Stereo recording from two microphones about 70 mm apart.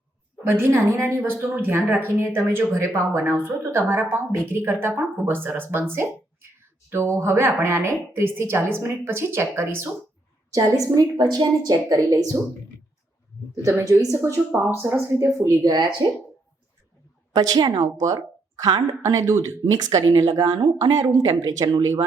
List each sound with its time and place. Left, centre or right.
0.4 s speech: right
10.5 s speech: right
13.8 s speech: right
14.8 s speech: right
15.4 s speech: right
17.3 s speech: right
19.2 s speech: right
21.8 s speech: right